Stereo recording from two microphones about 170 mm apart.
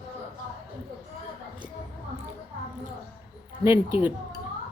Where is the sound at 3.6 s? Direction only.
10° right (ahead or behind).